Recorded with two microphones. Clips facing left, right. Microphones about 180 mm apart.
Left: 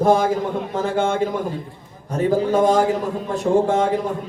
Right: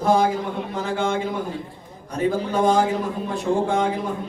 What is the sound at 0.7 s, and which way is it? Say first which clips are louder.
Speech: left 3 dB; 50° left (ahead or behind).